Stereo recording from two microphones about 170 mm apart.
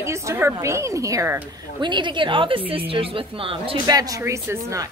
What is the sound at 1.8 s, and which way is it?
A woman's voice, 25° right (ahead or behind).